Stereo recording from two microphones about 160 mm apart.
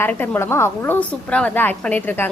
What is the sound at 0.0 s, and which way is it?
A woman's voice, 15° left (ahead or behind).